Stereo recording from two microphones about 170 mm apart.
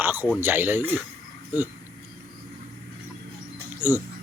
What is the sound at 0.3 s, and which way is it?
Speech, 10° right (ahead or behind).